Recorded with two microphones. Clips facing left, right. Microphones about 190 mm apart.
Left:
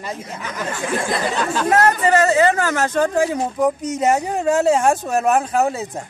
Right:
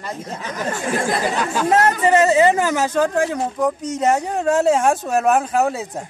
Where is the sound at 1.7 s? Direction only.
25° right (ahead or behind); by 6.0 s centre (ahead or behind).